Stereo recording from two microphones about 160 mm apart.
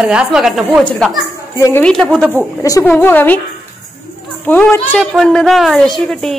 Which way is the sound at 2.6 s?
20° left (ahead or behind).